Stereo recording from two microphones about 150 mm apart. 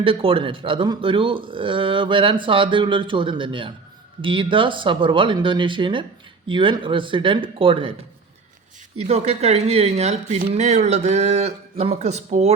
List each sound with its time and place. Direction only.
0.0 s speech: 35° right (ahead or behind)
9.0 s speech: 45° right (ahead or behind)